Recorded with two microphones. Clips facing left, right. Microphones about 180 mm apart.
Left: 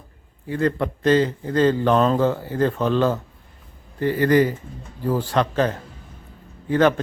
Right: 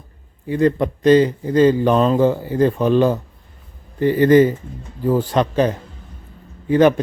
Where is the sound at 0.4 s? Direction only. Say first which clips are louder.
Right 5 dB; 15° right (ahead or behind).